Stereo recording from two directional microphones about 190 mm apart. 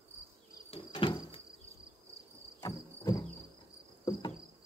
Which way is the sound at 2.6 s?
20° left (ahead or behind).